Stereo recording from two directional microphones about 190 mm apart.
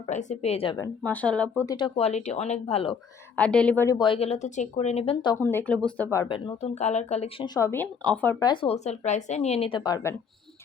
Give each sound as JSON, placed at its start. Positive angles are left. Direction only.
{"t": 0.1, "sound": "speech", "side_deg": 40}
{"t": 1.0, "sound": "speech", "side_deg": 5}
{"t": 1.6, "sound": "speech", "side_deg": 25}
{"t": 3.3, "sound": "speech", "side_deg": 5}
{"t": 5.4, "sound": "speech", "side_deg": 10}
{"t": 6.1, "sound": "speech", "side_deg": 20}
{"t": 7.4, "sound": "speech", "side_deg": 20}
{"t": 8.4, "sound": "speech", "side_deg": 30}